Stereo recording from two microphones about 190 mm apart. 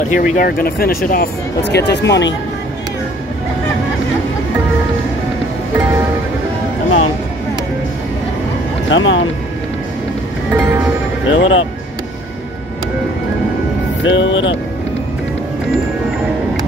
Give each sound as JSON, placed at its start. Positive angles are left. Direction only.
{"t": 0.1, "sound": "speech", "side_deg": 40}
{"t": 1.6, "sound": "speech", "side_deg": 65}
{"t": 8.8, "sound": "speech", "side_deg": 80}
{"t": 10.5, "sound": "music", "side_deg": -10}
{"t": 11.2, "sound": "speech", "side_deg": 90}
{"t": 14.0, "sound": "speech", "side_deg": 75}